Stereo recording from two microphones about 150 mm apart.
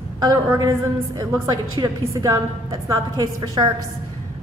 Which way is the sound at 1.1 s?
25° right (ahead or behind).